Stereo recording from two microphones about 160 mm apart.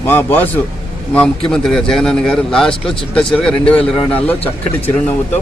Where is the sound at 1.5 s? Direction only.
5° left (ahead or behind).